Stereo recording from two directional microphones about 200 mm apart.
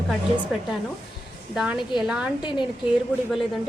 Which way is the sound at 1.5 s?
5° right (ahead or behind).